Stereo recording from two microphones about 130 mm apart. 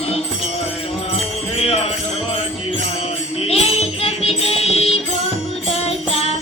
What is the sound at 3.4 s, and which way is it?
Music, 50° left (ahead or behind).